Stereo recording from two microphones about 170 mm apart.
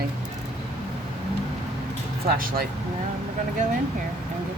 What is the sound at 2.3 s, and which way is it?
Speech, 60° right (ahead or behind).